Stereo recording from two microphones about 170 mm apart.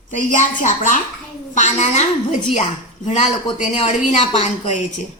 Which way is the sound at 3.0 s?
45° left (ahead or behind).